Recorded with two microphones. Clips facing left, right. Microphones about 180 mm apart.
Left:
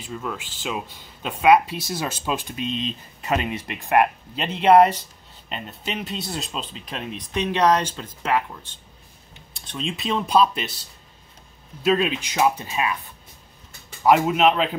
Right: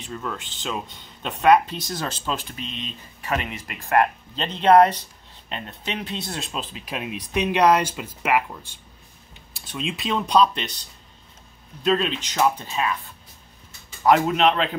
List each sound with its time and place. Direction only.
0.0 s speech: 5° left (ahead or behind)
3.3 s speech: 25° left (ahead or behind); by 13.0 s 10° left (ahead or behind)
14.0 s speech: 5° left (ahead or behind)